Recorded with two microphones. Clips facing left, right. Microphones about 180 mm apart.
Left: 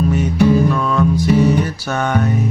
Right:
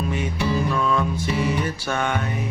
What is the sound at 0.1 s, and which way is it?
Music, 45° left (ahead or behind).